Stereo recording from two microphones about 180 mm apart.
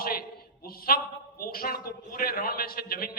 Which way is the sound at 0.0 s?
55° left (ahead or behind).